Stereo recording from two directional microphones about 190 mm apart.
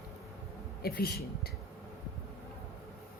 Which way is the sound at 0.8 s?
55° left (ahead or behind).